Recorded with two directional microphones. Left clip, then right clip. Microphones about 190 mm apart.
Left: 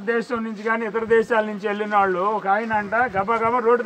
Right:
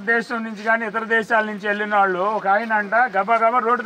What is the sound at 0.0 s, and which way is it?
A man's voice, 5° right (ahead or behind).